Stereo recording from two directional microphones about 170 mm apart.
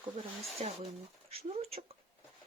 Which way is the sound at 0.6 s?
40° right (ahead or behind).